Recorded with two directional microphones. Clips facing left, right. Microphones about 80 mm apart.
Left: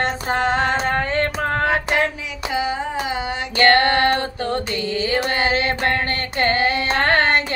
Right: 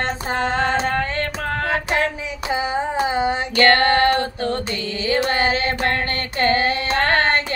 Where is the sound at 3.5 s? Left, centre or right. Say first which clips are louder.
Left 1 dB; left.